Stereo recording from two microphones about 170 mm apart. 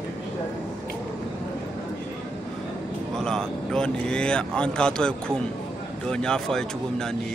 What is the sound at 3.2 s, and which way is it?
Speech, 5° left (ahead or behind).